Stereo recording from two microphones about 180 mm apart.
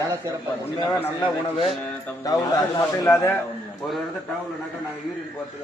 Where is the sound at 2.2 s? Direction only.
20° left (ahead or behind).